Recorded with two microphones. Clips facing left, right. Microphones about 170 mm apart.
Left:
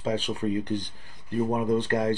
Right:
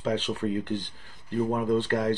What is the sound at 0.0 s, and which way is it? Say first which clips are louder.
Speech: even; 10° left (ahead or behind).